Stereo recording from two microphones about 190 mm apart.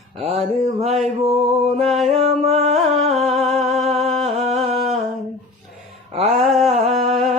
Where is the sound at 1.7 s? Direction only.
35° right (ahead or behind).